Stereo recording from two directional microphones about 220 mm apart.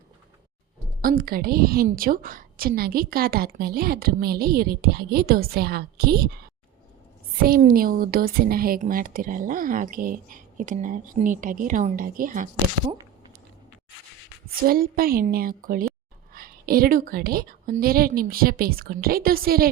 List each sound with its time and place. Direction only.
1.0 s a woman's voice: 40° right (ahead or behind)
7.4 s speech: 40° right (ahead or behind)
14.6 s a woman's voice: 40° right (ahead or behind)